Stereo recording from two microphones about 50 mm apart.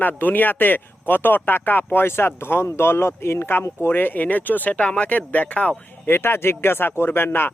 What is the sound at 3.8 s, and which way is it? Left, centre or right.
Speech, left.